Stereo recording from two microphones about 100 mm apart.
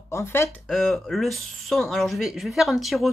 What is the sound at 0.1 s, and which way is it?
Speech, 25° left (ahead or behind).